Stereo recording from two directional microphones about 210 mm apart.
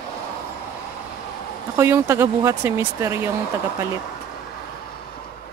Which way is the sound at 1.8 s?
10° right (ahead or behind).